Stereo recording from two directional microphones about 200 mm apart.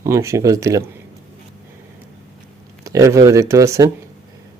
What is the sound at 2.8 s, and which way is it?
Speech, 15° right (ahead or behind).